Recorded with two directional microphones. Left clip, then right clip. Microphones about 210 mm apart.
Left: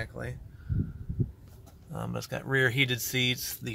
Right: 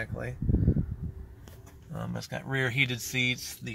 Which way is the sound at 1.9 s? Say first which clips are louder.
Left 2 dB; 25° left (ahead or behind).